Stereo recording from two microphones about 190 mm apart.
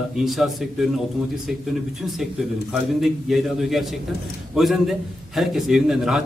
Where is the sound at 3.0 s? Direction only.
Centre (ahead or behind).